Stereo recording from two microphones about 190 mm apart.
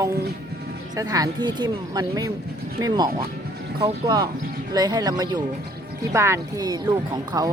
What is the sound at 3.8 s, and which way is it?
Speech, 20° right (ahead or behind).